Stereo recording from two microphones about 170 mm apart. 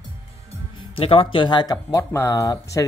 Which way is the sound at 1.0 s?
35° left (ahead or behind).